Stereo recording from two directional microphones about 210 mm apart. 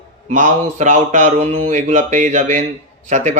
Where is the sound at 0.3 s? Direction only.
35° right (ahead or behind).